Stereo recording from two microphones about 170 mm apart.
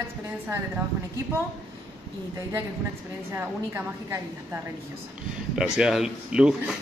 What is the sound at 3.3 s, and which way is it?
A woman's voice, 15° right (ahead or behind).